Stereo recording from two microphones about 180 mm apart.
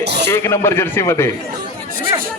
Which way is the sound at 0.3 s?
15° left (ahead or behind).